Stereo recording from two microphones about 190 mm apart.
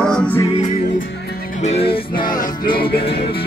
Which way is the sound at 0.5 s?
35° left (ahead or behind).